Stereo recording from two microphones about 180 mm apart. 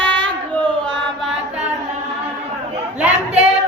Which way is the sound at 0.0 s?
5° left (ahead or behind).